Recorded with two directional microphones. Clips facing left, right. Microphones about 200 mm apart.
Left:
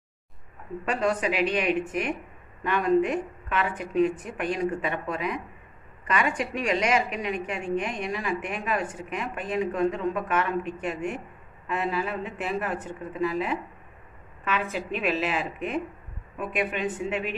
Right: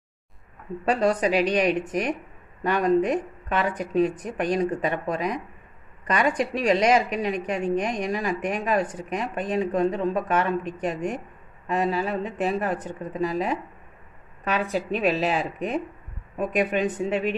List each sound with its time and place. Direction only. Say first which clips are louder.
0.8 s a woman's voice: right 4 dB; 35° right (ahead or behind)